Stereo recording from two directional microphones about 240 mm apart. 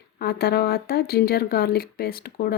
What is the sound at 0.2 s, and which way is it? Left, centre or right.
Speech, left.